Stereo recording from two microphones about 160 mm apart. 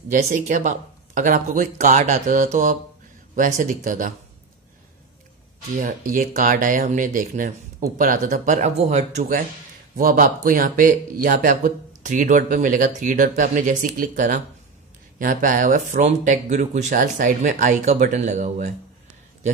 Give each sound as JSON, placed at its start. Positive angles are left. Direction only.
{"t": 0.1, "sound": "speech", "side_deg": -50}
{"t": 5.8, "sound": "speech", "side_deg": -55}